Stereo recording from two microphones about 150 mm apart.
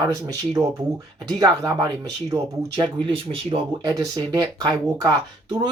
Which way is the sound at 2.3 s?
30° right (ahead or behind).